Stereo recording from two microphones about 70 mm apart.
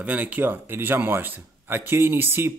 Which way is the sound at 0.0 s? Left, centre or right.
Right.